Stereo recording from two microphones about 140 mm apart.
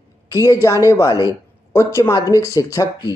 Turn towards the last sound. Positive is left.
turn(degrees=25)  # may be behind; listen again after turning